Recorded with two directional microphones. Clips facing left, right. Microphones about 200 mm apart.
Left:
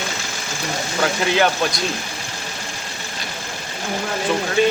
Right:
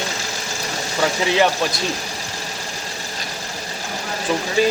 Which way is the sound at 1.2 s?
Centre (ahead or behind).